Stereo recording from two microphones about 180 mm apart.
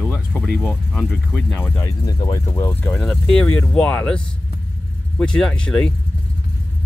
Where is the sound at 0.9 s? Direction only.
10° left (ahead or behind).